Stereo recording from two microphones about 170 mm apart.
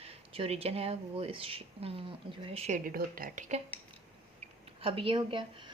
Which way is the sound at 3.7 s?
10° left (ahead or behind).